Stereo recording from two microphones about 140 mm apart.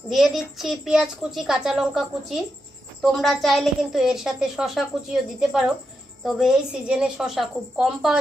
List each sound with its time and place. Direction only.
0.1 s a woman's voice: centre (ahead or behind)